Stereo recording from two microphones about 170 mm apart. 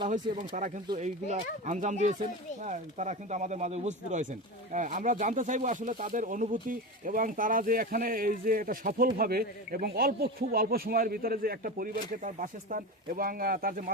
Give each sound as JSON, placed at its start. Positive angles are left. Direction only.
{"t": 0.1, "sound": "speech", "side_deg": -45}